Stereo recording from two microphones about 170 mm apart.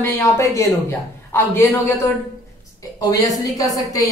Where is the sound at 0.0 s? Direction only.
15° left (ahead or behind).